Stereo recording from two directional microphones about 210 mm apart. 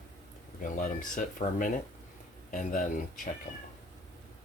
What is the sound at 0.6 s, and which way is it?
Speech, 40° left (ahead or behind).